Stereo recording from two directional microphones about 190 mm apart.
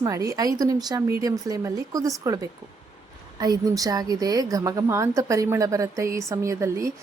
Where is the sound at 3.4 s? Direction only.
20° right (ahead or behind).